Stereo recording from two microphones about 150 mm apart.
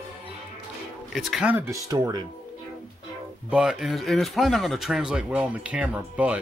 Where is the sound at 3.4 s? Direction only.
5° right (ahead or behind).